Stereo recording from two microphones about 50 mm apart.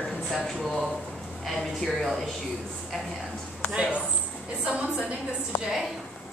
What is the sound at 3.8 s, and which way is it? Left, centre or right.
A woman's voice, right.